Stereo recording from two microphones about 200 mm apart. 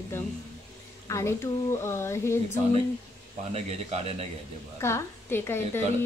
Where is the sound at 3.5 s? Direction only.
30° right (ahead or behind).